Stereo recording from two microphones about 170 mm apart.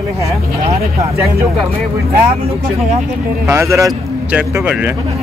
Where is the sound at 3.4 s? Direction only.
15° right (ahead or behind).